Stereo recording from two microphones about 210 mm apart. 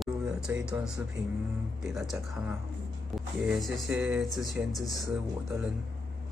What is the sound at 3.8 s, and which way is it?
Speech, 60° right (ahead or behind).